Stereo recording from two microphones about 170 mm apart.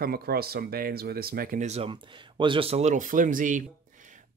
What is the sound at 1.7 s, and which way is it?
Speech, 30° right (ahead or behind).